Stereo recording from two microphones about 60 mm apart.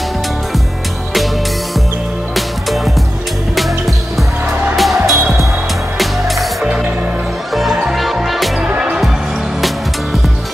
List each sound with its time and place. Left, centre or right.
2.3 s music: centre
4.7 s music: centre
6.6 s music: centre
7.5 s music: centre